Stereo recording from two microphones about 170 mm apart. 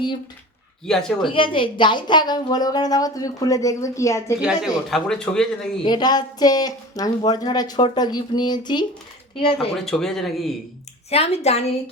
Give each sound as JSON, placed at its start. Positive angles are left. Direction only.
{"t": 0.9, "sound": "a man's voice", "side_deg": 5}
{"t": 1.3, "sound": "a woman's voice", "side_deg": 30}
{"t": 4.4, "sound": "a man's voice", "side_deg": -5}
{"t": 5.8, "sound": "a woman's voice", "side_deg": 25}
{"t": 9.8, "sound": "a man's voice", "side_deg": 5}
{"t": 11.1, "sound": "a woman's voice", "side_deg": 35}